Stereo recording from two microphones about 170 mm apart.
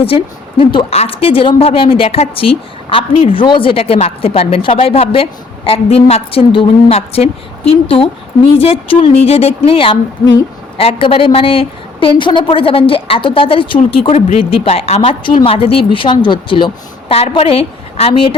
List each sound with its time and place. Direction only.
0.0 s speech: 35° left (ahead or behind)